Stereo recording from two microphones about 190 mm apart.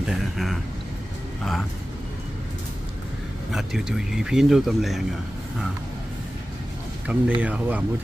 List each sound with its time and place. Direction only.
0.0 s a sound: centre (ahead or behind)
1.4 s speech: centre (ahead or behind)
3.5 s speech: 5° right (ahead or behind)
7.1 s speech: 5° right (ahead or behind)